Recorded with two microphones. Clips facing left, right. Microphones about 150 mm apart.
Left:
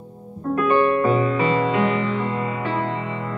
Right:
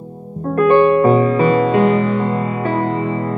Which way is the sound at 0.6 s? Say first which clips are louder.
Right 7 dB; 45° right (ahead or behind).